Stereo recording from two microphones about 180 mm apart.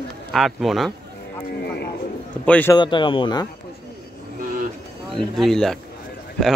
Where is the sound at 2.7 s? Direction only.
25° left (ahead or behind).